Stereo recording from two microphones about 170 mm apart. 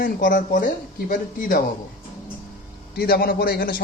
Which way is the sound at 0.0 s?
55° left (ahead or behind).